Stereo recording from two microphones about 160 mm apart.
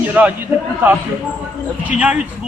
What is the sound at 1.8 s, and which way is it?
Speech, 10° right (ahead or behind).